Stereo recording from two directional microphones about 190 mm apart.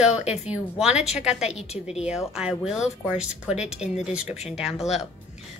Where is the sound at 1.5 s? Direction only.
35° left (ahead or behind).